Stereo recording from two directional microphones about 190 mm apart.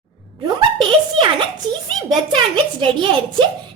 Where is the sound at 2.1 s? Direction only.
25° right (ahead or behind).